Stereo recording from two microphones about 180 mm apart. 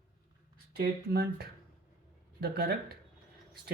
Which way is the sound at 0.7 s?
60° right (ahead or behind).